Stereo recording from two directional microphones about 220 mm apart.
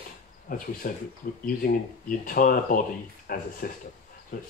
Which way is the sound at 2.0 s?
40° left (ahead or behind).